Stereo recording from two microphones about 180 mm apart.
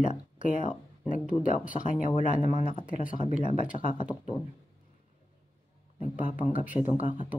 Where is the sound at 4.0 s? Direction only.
30° left (ahead or behind).